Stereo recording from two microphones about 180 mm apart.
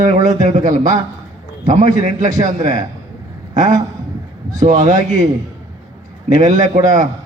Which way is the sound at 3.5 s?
40° right (ahead or behind).